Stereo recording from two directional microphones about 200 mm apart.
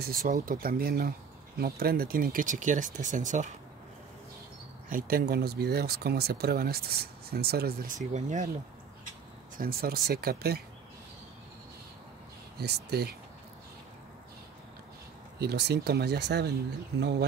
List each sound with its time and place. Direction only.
0.0 s speech: 50° right (ahead or behind)
4.8 s speech: 45° right (ahead or behind)
9.6 s speech: 50° right (ahead or behind)
12.5 s speech: 55° right (ahead or behind)
15.3 s speech: 55° right (ahead or behind)